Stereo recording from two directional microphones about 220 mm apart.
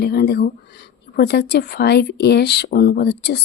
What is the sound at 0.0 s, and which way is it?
Speech, 45° left (ahead or behind).